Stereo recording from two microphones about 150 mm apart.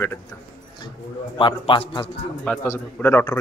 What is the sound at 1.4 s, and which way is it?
Speech, 35° left (ahead or behind).